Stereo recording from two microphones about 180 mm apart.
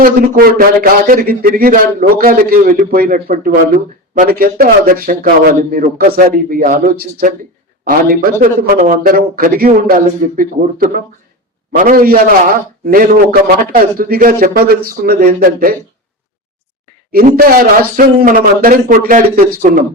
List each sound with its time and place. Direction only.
0.0 s a man's voice: 55° right (ahead or behind)
17.1 s speech: 55° right (ahead or behind)